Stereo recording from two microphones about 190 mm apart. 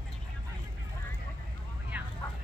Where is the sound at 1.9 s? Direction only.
10° right (ahead or behind).